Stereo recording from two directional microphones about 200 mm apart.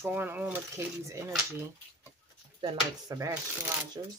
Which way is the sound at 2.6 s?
20° right (ahead or behind).